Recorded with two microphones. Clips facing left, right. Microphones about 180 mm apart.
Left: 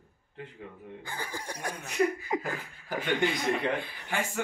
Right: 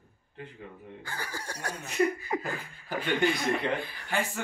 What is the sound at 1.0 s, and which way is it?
Laughter, 15° left (ahead or behind).